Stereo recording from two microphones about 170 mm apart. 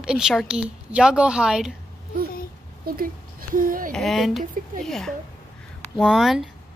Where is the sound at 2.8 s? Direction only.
55° right (ahead or behind).